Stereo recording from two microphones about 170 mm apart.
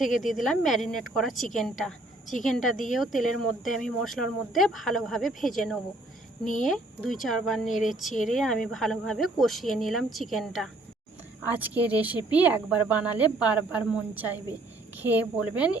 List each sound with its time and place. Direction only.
0.0 s speech: centre (ahead or behind)
11.4 s speech: 10° right (ahead or behind)